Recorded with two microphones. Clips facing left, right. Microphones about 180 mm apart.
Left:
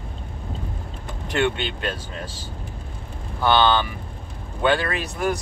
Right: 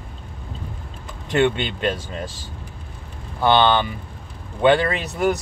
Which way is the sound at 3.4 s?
20° right (ahead or behind).